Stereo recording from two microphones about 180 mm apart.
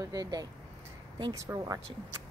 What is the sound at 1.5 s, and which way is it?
Speech, 15° right (ahead or behind).